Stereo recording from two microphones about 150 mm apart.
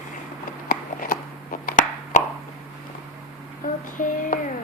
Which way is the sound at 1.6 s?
60° left (ahead or behind).